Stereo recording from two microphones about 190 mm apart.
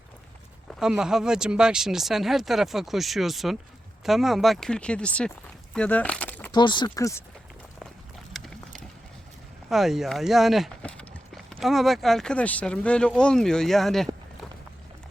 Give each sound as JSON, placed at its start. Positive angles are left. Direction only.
{"t": 0.7, "sound": "speech", "side_deg": -5}
{"t": 6.5, "sound": "speech", "side_deg": 25}
{"t": 9.6, "sound": "speech", "side_deg": 0}